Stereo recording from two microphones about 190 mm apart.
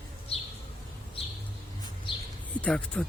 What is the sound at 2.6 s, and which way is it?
Speech, 5° left (ahead or behind).